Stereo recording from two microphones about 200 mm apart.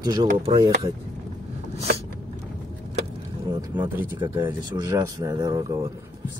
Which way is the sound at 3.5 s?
15° right (ahead or behind).